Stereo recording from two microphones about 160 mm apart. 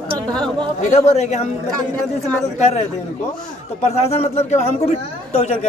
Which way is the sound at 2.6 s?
40° left (ahead or behind).